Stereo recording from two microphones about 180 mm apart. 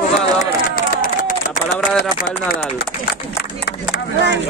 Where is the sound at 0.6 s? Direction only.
50° left (ahead or behind).